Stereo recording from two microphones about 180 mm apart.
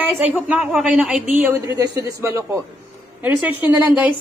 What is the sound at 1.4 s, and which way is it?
A woman's voice, 15° right (ahead or behind).